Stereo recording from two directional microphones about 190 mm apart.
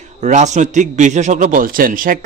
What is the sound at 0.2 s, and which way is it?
A man's voice, 40° right (ahead or behind).